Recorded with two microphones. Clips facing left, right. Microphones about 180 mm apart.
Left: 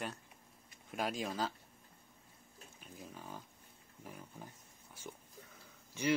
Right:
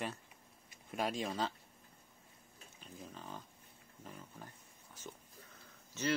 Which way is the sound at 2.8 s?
10° left (ahead or behind).